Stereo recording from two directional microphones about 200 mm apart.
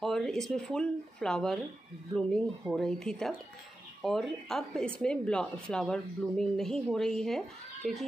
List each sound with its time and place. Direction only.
0.0 s speech: centre (ahead or behind)